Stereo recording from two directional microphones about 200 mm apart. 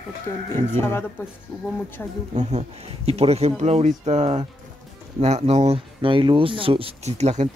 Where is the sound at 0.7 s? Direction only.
10° left (ahead or behind).